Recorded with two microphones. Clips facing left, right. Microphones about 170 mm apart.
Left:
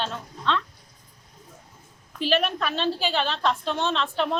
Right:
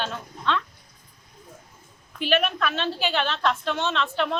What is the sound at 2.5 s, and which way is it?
A woman's voice, 35° left (ahead or behind).